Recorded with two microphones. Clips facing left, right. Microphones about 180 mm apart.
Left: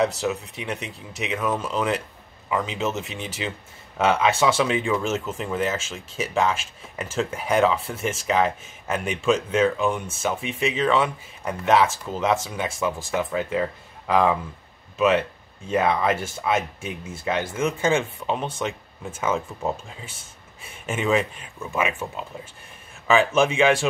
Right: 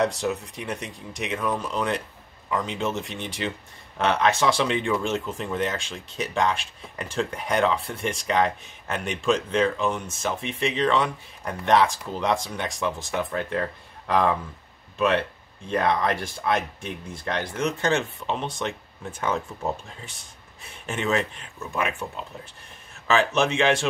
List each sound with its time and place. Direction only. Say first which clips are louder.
0.0 s speech: left 1 dB; centre (ahead or behind)